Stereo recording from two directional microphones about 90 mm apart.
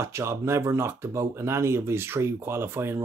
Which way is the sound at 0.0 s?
30° right (ahead or behind).